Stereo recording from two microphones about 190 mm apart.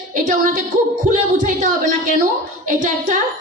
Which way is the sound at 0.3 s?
45° right (ahead or behind).